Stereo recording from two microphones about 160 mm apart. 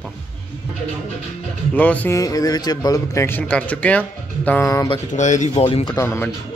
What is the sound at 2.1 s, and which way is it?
A man's voice, 20° left (ahead or behind).